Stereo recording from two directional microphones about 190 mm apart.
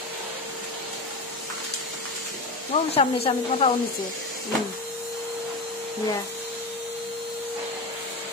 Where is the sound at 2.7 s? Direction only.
30° left (ahead or behind).